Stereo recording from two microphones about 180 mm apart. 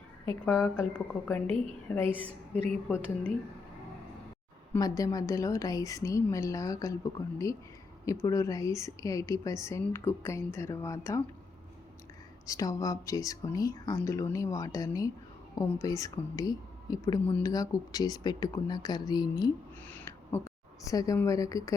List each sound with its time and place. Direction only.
0.4 s a woman's voice: 10° left (ahead or behind)
1.5 s a woman's voice: 30° right (ahead or behind)
2.6 s a woman's voice: 10° left (ahead or behind)
4.7 s a woman's voice: 20° left (ahead or behind)
12.5 s speech: 20° left (ahead or behind)
19.9 s a sound: 10° left (ahead or behind)
20.8 s a woman's voice: 20° left (ahead or behind)